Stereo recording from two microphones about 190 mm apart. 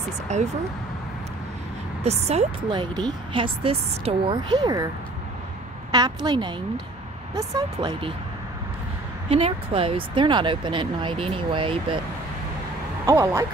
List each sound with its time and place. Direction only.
0.3 s speech: 35° right (ahead or behind)
2.0 s speech: 35° right (ahead or behind)
5.9 s speech: 20° right (ahead or behind)
9.3 s speech: 30° right (ahead or behind)
13.0 s speech: 15° right (ahead or behind)